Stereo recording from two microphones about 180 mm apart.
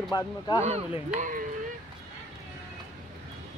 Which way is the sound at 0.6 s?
40° right (ahead or behind).